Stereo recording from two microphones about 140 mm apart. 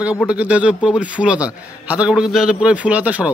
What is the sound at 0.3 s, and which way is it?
A man's voice, 10° right (ahead or behind).